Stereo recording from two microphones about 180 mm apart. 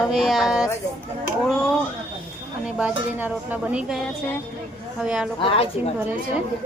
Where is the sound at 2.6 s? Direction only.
5° right (ahead or behind).